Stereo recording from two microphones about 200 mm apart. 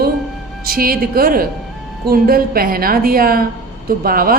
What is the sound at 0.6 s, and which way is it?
A woman's voice, 45° right (ahead or behind).